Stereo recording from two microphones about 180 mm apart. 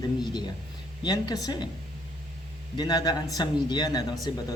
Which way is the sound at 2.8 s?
20° left (ahead or behind).